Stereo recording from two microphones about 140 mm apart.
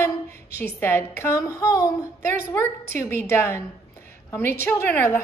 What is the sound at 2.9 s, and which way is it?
A woman's voice, 15° left (ahead or behind).